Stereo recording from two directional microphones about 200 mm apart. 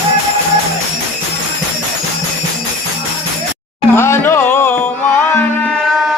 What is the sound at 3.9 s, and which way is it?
Music, 10° left (ahead or behind).